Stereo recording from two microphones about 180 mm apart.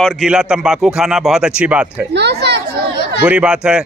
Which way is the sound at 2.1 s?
70° right (ahead or behind).